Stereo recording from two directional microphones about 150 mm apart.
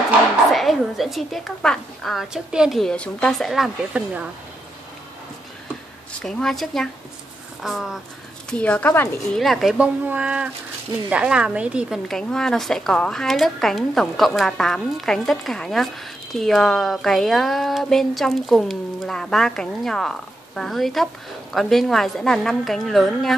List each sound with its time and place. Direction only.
0.5 s a woman's voice: centre (ahead or behind)
6.2 s a woman's voice: centre (ahead or behind)
8.5 s speech: 10° left (ahead or behind)
9.3 s a woman's voice: centre (ahead or behind)